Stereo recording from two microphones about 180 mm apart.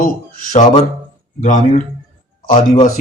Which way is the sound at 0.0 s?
50° left (ahead or behind).